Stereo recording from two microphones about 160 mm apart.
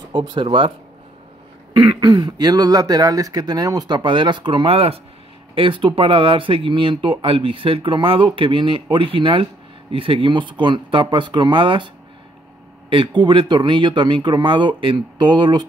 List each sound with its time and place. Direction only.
0.1 s speech: 30° right (ahead or behind)
1.9 s speech: 30° right (ahead or behind)
12.9 s speech: 30° right (ahead or behind)